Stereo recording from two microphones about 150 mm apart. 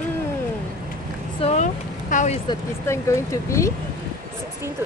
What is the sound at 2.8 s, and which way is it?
Speech, 20° left (ahead or behind).